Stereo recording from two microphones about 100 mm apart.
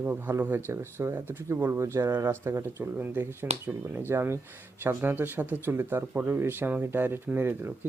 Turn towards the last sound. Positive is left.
turn(degrees=-20)  # may be behind; listen again after turning